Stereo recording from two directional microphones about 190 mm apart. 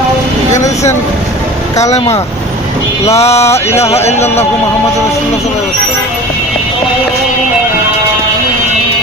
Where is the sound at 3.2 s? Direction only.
35° left (ahead or behind).